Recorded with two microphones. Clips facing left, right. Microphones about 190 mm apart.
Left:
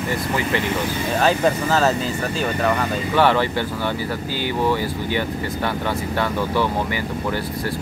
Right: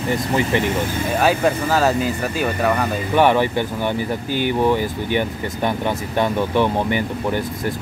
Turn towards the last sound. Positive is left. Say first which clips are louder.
# right 3 dB
turn(degrees=-20)  # may be behind; listen again after turning